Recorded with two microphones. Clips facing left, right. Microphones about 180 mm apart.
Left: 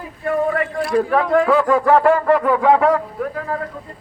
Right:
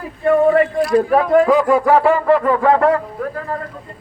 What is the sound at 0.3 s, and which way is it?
Speech, 25° right (ahead or behind).